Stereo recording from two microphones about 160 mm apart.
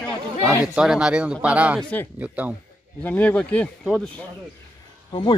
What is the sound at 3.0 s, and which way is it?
Speech, 10° left (ahead or behind).